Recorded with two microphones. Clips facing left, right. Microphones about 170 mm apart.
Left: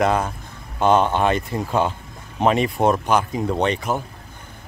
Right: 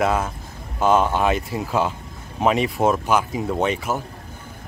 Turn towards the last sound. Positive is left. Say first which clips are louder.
# left 1 dB
turn(degrees=-5)  # may be behind; listen again after turning